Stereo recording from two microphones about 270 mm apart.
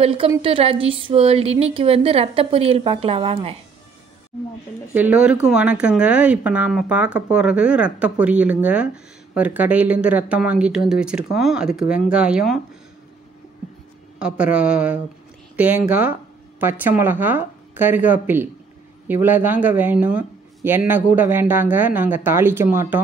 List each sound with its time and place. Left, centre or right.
0.0 s a woman's voice: centre
4.9 s speech: centre
14.2 s speech: centre